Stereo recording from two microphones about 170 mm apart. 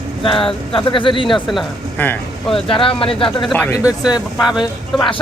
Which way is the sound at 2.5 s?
30° left (ahead or behind).